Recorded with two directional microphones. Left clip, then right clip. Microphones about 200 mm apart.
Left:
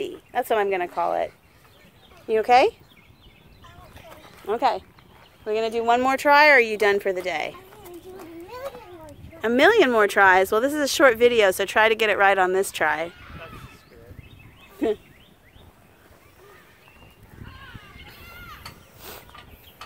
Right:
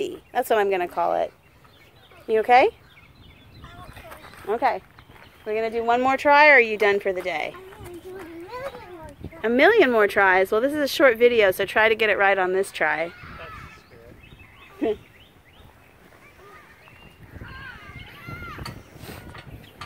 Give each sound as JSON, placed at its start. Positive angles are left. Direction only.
{"t": 0.0, "sound": "speech", "side_deg": -5}
{"t": 3.6, "sound": "a sound", "side_deg": 0}
{"t": 4.6, "sound": "speech", "side_deg": 15}
{"t": 18.9, "sound": "vehicle", "side_deg": 10}